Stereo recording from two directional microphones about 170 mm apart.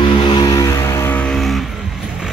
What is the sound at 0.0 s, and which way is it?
Music, 30° left (ahead or behind).